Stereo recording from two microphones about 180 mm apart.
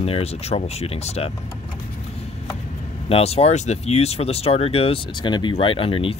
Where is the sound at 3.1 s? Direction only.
35° left (ahead or behind).